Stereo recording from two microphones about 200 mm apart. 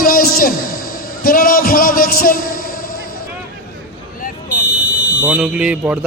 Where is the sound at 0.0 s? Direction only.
45° left (ahead or behind).